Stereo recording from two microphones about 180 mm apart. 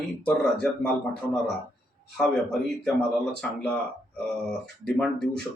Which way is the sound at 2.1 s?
5° left (ahead or behind).